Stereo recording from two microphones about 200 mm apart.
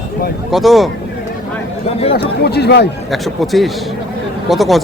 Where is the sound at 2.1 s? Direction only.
55° left (ahead or behind).